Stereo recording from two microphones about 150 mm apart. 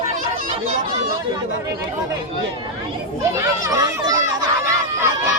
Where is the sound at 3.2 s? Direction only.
20° right (ahead or behind).